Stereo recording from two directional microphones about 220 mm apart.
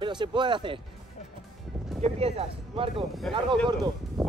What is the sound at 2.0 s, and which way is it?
Speech, 30° right (ahead or behind).